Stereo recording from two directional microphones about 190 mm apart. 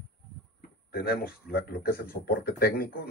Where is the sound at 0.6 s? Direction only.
55° left (ahead or behind).